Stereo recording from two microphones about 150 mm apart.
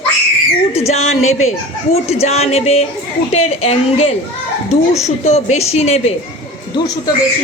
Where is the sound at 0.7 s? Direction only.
45° left (ahead or behind).